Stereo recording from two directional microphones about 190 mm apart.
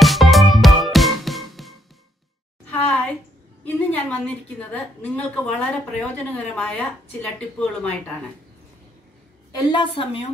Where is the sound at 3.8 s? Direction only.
10° left (ahead or behind).